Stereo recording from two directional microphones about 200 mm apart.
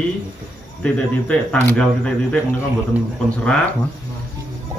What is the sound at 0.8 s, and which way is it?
Speech, 5° left (ahead or behind).